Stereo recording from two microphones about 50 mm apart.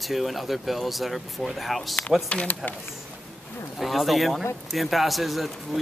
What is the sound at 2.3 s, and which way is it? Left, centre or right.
Speech, left.